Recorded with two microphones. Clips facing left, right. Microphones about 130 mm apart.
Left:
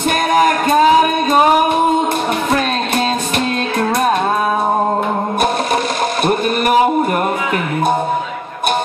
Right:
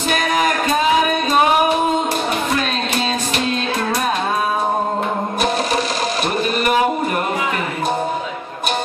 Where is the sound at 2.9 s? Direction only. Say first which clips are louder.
Left 4 dB; 50° left (ahead or behind).